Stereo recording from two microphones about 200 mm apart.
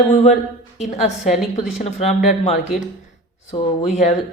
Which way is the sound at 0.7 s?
35° left (ahead or behind).